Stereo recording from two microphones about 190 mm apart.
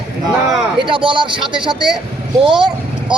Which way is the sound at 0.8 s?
25° right (ahead or behind).